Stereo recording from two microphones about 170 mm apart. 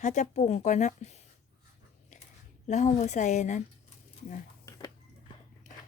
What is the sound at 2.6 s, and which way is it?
Speech, 45° left (ahead or behind).